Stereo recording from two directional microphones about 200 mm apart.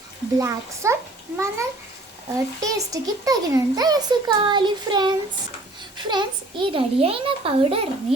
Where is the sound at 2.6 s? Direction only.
15° right (ahead or behind).